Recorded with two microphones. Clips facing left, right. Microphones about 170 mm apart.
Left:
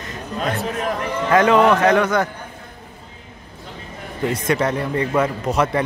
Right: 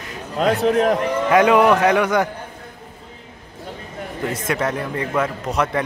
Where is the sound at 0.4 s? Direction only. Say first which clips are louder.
Right 7 dB; 70° right (ahead or behind).